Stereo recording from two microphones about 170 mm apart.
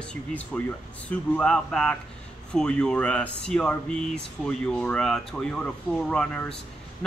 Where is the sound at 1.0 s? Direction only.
5° left (ahead or behind).